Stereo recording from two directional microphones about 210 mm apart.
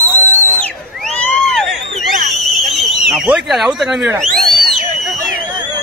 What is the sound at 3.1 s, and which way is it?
Speech, 5° right (ahead or behind).